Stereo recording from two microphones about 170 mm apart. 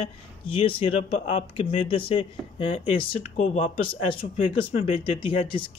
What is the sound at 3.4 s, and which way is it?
Mantra, 45° left (ahead or behind).